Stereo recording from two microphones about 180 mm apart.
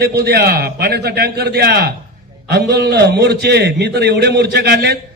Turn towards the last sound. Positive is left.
turn(degrees=-70)  # may be behind; listen again after turning